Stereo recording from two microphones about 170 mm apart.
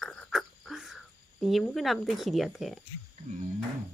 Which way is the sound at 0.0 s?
Centre (ahead or behind).